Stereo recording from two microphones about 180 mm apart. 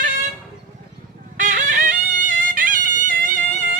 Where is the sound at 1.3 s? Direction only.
45° right (ahead or behind).